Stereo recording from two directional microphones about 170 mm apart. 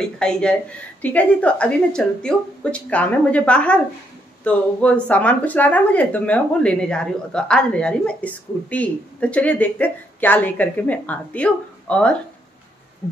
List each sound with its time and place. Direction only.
0.0 s speech: 5° left (ahead or behind)